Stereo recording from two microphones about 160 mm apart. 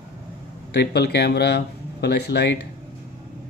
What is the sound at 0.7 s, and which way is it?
Speech, 90° left.